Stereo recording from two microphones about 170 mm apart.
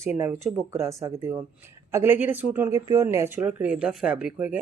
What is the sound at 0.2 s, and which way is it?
Speech, 15° right (ahead or behind).